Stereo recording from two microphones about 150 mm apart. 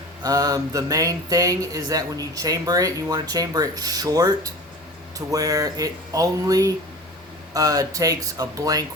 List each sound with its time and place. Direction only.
0.2 s speech: 25° right (ahead or behind)